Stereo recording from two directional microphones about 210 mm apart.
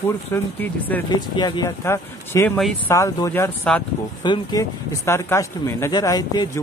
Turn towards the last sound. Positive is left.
turn(degrees=15)  # may be behind; listen again after turning